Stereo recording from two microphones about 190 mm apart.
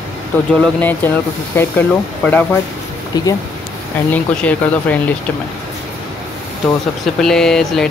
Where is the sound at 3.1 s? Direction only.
20° left (ahead or behind).